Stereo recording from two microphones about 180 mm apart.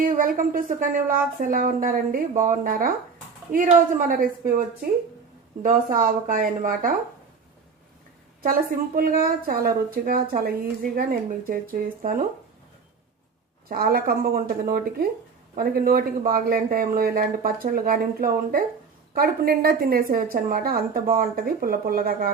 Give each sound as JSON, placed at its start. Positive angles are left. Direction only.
{"t": 0.0, "sound": "a woman's voice", "side_deg": -50}
{"t": 5.6, "sound": "a woman's voice", "side_deg": -50}
{"t": 8.4, "sound": "a woman's voice", "side_deg": -50}
{"t": 13.7, "sound": "a woman's voice", "side_deg": -55}